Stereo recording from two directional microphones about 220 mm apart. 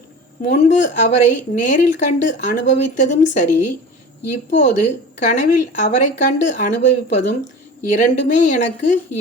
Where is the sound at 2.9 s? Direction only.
35° left (ahead or behind).